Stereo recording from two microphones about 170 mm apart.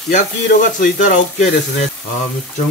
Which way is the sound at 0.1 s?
45° left (ahead or behind).